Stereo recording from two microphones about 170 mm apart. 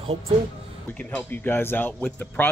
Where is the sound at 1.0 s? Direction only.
10° left (ahead or behind).